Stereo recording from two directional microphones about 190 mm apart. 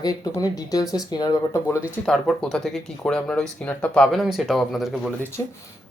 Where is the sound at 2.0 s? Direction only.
Centre (ahead or behind).